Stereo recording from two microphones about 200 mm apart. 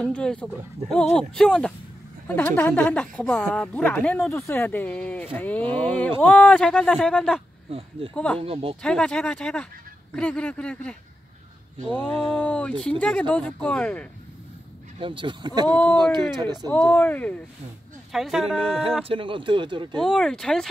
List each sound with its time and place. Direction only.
0.0 s speech: 5° left (ahead or behind)
8.4 s speech: 30° right (ahead or behind)
8.8 s speech: 5° left (ahead or behind)
15.0 s speech: 25° right (ahead or behind)
16.6 s speech: 10° left (ahead or behind)
19.0 s speech: 25° right (ahead or behind)
20.0 s speech: 5° left (ahead or behind)